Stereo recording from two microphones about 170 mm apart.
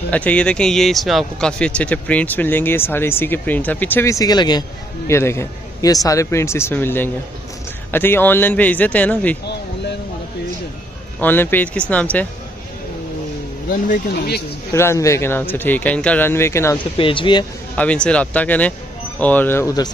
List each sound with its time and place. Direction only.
0.1 s speech: 10° left (ahead or behind)
11.1 s speech: 10° left (ahead or behind)
13.7 s speech: 60° left (ahead or behind)
14.7 s speech: 15° left (ahead or behind)
16.9 s speech: 30° left (ahead or behind)
17.7 s speech: 5° left (ahead or behind)